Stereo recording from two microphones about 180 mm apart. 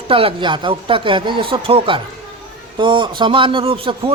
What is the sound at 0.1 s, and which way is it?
Speech, 30° right (ahead or behind).